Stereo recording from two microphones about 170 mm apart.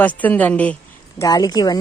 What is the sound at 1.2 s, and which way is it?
Speech, 20° left (ahead or behind).